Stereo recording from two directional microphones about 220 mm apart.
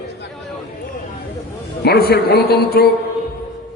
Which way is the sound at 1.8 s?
45° left (ahead or behind).